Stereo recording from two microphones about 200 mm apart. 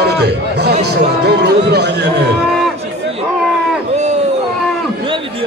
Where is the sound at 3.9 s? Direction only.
35° right (ahead or behind).